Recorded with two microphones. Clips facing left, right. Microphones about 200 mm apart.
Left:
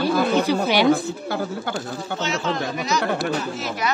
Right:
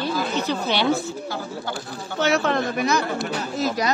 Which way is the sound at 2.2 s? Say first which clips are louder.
Right 5 dB; 60° right (ahead or behind).